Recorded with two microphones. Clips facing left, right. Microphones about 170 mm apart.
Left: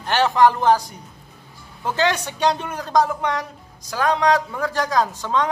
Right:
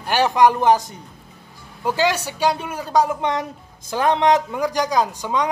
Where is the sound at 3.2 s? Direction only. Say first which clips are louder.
Right 2 dB; 20° right (ahead or behind).